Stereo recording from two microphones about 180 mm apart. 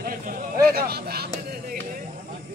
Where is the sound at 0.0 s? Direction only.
55° right (ahead or behind).